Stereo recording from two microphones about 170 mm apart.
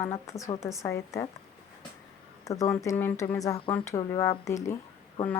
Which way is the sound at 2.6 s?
20° left (ahead or behind).